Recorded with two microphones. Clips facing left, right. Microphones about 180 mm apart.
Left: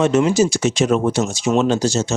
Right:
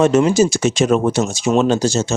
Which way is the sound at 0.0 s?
45° right (ahead or behind).